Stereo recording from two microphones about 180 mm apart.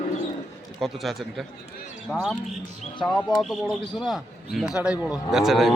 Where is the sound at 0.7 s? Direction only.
Centre (ahead or behind).